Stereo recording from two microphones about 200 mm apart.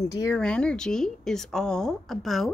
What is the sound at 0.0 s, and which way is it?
Speech, 15° left (ahead or behind).